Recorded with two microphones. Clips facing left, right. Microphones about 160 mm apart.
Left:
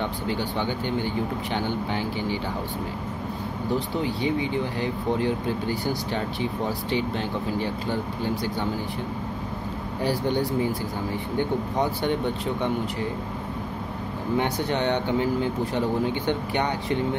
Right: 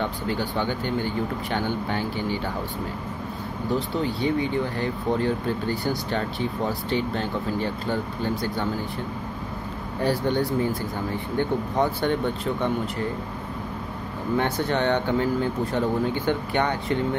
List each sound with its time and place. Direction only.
0.3 s speech: 15° left (ahead or behind)
4.0 s speech: 15° left (ahead or behind)
10.0 s speech: 15° left (ahead or behind)
14.3 s speech: 15° left (ahead or behind)